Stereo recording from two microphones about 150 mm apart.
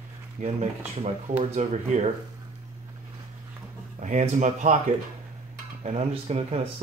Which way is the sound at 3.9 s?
50° right (ahead or behind).